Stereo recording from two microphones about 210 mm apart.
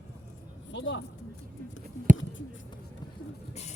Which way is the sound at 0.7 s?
60° left (ahead or behind).